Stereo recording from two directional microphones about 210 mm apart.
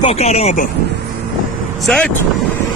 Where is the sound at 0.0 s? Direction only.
30° left (ahead or behind).